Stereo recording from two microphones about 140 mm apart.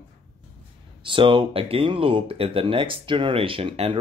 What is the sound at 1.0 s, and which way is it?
Speech, 35° right (ahead or behind).